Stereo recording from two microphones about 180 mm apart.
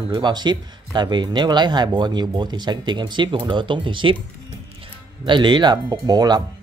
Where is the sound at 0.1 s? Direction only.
25° right (ahead or behind).